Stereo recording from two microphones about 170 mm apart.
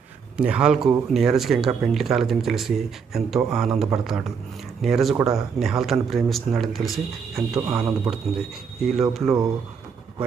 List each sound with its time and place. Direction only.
0.3 s speech: 5° right (ahead or behind)
7.7 s speech: 15° right (ahead or behind)
8.8 s speech: centre (ahead or behind)